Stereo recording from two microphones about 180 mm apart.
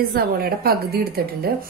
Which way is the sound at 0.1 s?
60° right (ahead or behind).